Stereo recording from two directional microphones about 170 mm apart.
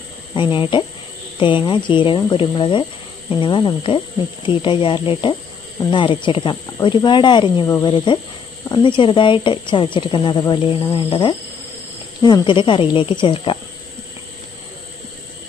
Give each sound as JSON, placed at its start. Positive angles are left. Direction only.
{"t": 0.3, "sound": "speech", "side_deg": 30}
{"t": 12.2, "sound": "speech", "side_deg": 25}